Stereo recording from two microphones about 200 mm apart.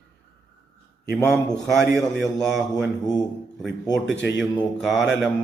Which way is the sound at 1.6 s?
5° left (ahead or behind).